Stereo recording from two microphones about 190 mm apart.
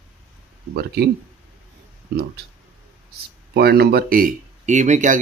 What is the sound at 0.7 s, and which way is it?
Speech, 60° right (ahead or behind).